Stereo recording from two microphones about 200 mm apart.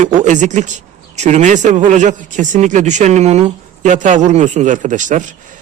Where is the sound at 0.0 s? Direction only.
40° right (ahead or behind).